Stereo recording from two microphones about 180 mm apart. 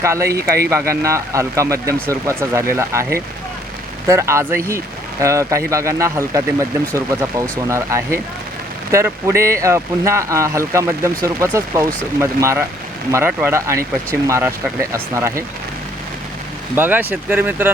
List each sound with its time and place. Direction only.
0.0 s speech: 15° right (ahead or behind)
16.7 s speech: 10° right (ahead or behind)